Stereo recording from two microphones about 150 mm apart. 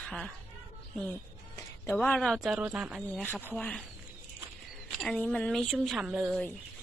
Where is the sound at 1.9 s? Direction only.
10° left (ahead or behind); by 3.0 s 10° right (ahead or behind).